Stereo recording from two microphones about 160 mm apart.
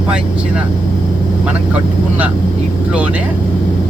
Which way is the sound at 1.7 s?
10° right (ahead or behind).